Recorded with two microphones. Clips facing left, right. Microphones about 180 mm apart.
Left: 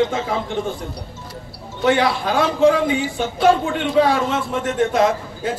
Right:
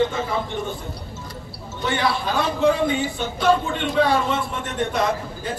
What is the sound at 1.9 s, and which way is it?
A man's voice, 90° left.